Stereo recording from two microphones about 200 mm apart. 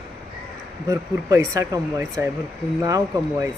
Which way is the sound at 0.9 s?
15° right (ahead or behind).